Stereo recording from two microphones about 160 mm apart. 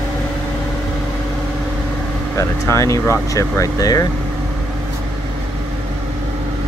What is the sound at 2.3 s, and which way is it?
Speech, 20° left (ahead or behind).